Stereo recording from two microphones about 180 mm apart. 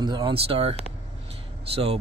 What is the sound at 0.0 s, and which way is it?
Speech, 25° right (ahead or behind).